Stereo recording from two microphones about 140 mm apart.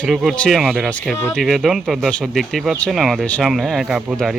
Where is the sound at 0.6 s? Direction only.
5° right (ahead or behind).